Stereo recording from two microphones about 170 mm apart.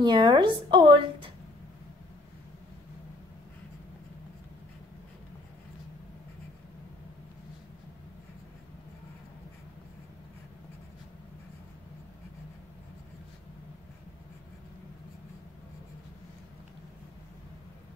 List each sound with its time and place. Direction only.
0.0 s a woman's voice: 25° right (ahead or behind)